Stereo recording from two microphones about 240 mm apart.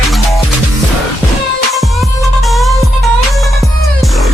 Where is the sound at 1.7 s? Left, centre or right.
Centre.